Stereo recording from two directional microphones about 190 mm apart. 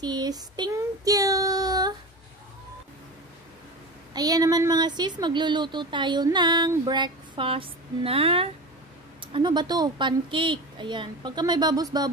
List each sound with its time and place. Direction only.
0.0 s child singing: 20° right (ahead or behind)
4.1 s a woman's voice: 20° right (ahead or behind)